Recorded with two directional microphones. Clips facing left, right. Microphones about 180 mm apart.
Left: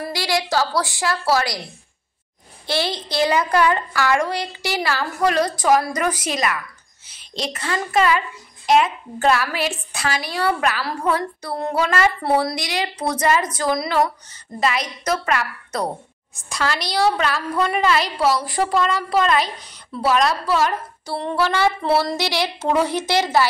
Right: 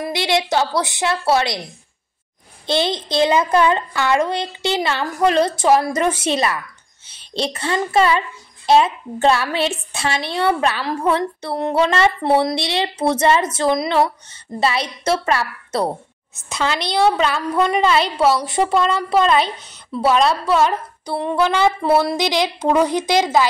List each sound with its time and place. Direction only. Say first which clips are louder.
0.0 s a woman's voice: right 3 dB; 20° right (ahead or behind)
2.6 s a woman's voice: right 4 dB; 20° right (ahead or behind)